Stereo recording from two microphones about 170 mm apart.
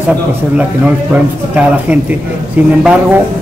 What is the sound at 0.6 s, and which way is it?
Speech, 10° right (ahead or behind).